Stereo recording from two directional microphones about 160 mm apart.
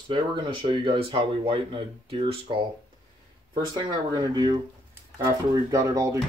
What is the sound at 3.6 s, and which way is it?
Speech, 25° right (ahead or behind).